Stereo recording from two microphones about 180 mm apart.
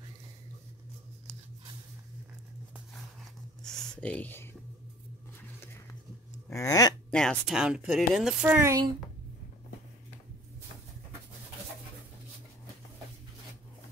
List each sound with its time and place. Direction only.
3.6 s speech: 5° left (ahead or behind)
6.5 s speech: 20° left (ahead or behind)
7.1 s speech: 5° left (ahead or behind); by 8.9 s 20° right (ahead or behind)